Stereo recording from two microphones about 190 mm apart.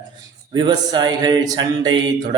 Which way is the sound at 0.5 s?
20° right (ahead or behind).